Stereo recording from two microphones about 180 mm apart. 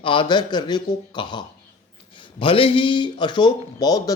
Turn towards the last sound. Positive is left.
turn(degrees=20)  # may be behind; listen again after turning